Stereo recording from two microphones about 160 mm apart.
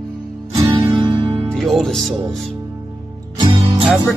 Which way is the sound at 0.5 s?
20° right (ahead or behind).